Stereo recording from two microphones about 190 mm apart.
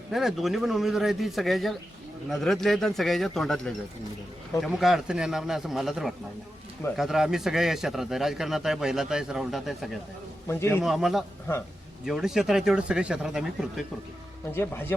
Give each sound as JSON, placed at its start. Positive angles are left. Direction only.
{"t": 0.1, "sound": "a man's voice", "side_deg": 0}
{"t": 10.5, "sound": "speech", "side_deg": 10}
{"t": 10.8, "sound": "a man's voice", "side_deg": 0}
{"t": 14.5, "sound": "speech", "side_deg": 10}